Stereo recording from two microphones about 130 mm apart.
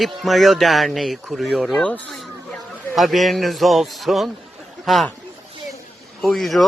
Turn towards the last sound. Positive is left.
turn(degrees=0)  # may be behind; listen again after turning